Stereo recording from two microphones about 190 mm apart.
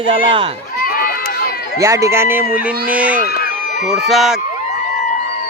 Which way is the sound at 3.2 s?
55° left (ahead or behind).